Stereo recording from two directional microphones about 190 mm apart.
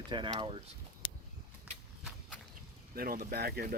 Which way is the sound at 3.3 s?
55° right (ahead or behind).